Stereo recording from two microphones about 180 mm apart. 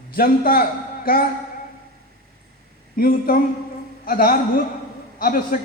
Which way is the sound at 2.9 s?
55° left (ahead or behind).